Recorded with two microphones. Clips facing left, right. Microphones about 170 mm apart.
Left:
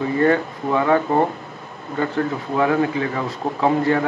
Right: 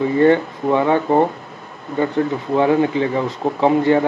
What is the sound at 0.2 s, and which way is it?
Speech, 25° right (ahead or behind).